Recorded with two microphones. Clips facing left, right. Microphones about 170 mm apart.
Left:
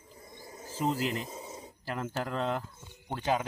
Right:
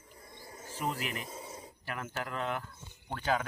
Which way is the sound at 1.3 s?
20° left (ahead or behind).